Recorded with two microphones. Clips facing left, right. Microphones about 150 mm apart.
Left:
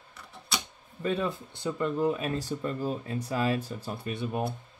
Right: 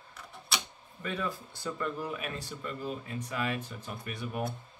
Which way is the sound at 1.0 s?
25° left (ahead or behind).